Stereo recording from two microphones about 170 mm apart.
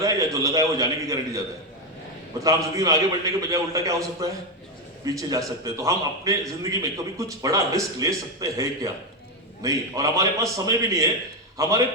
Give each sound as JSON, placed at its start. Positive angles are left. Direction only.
{"t": 0.0, "sound": "a man's voice", "side_deg": -20}